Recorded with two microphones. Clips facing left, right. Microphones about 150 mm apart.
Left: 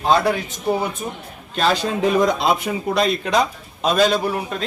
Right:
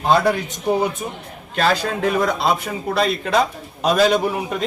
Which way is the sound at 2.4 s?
Centre (ahead or behind).